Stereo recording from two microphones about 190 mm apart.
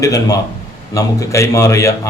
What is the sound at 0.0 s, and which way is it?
A man's voice, 20° left (ahead or behind).